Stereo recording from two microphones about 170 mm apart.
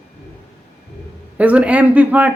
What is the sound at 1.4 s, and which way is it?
Speech, 10° right (ahead or behind).